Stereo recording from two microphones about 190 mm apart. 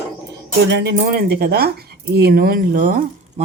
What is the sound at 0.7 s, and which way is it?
Speech, 65° right (ahead or behind).